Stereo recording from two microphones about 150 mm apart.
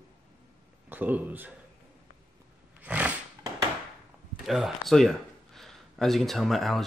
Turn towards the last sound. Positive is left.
turn(degrees=0)  # may be behind; listen again after turning